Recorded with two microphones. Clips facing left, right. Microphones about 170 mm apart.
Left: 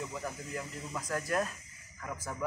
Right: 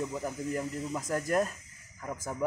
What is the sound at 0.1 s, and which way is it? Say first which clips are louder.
Speech: right 6 dB; 25° right (ahead or behind).